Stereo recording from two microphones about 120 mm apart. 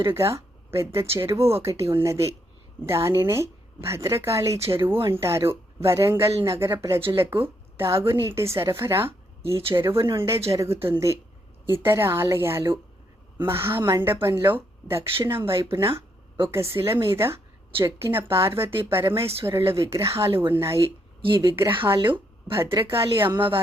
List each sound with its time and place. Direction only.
0.1 s a woman's voice: 25° right (ahead or behind)
21.2 s speech: 45° right (ahead or behind)
22.5 s a woman's voice: 25° right (ahead or behind)
23.3 s a woman's voice: 45° right (ahead or behind)